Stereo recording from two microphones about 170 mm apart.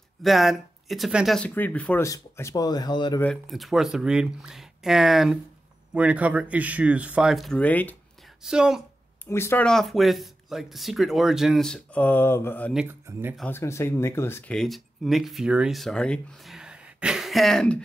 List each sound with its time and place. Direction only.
0.2 s speech: centre (ahead or behind); by 3.2 s 25° left (ahead or behind)
3.2 s speech: 5° left (ahead or behind)
8.4 s speech: 5° right (ahead or behind)
9.2 s speech: 15° left (ahead or behind)
12.8 s speech: 15° right (ahead or behind)
13.5 s speech: 15° left (ahead or behind)
14.6 s speech: centre (ahead or behind)